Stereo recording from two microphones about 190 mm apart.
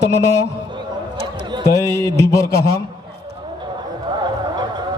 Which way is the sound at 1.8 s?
15° left (ahead or behind).